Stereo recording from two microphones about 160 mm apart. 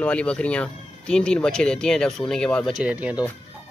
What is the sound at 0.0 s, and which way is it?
Speech, 5° left (ahead or behind).